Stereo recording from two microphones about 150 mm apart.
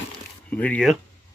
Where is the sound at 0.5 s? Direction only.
10° left (ahead or behind).